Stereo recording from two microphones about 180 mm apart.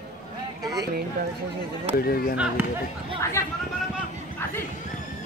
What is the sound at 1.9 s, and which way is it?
Speech, 55° left (ahead or behind).